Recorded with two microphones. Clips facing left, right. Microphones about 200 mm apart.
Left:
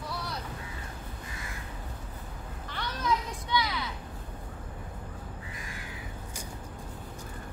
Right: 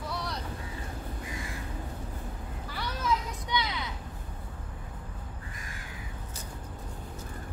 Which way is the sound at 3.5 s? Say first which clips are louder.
Left 2 dB; 20° right (ahead or behind).